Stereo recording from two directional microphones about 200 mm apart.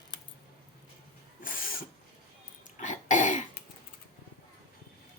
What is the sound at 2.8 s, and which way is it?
Cough, 40° left (ahead or behind).